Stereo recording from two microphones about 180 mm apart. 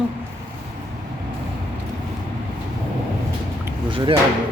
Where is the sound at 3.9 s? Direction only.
25° right (ahead or behind).